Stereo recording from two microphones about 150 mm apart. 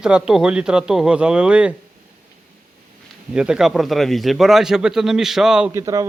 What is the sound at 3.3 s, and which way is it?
Speech, 5° right (ahead or behind).